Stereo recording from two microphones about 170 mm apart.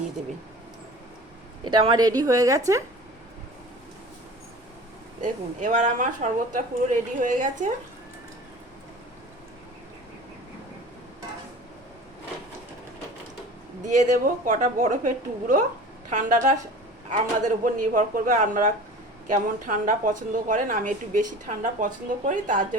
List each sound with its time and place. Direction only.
1.6 s a woman's voice: 30° right (ahead or behind)
5.2 s a woman's voice: 50° right (ahead or behind)
13.8 s a woman's voice: 45° right (ahead or behind)